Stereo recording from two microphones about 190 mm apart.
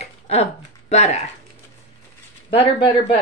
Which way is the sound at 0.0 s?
35° left (ahead or behind).